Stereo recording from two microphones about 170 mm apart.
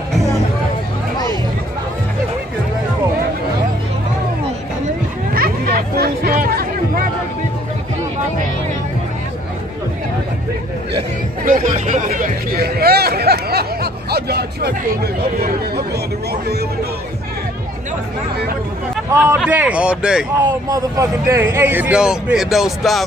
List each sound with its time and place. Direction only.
5.3 s a sound: 60° right (ahead or behind)
11.4 s music: 50° right (ahead or behind)
12.1 s chatter: 65° right (ahead or behind)
14.1 s vehicle: 70° right (ahead or behind)
15.3 s chatter: 60° right (ahead or behind)
19.4 s a man's voice: 10° right (ahead or behind)
20.6 s a man's voice: 20° right (ahead or behind); by 23.0 s centre (ahead or behind)